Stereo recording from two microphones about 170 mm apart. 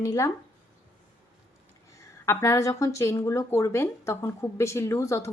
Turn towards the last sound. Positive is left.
turn(degrees=15)  # may be behind; listen again after turning